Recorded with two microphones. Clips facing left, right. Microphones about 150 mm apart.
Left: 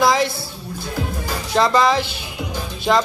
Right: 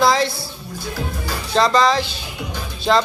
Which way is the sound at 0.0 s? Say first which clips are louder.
Even; 15° left (ahead or behind).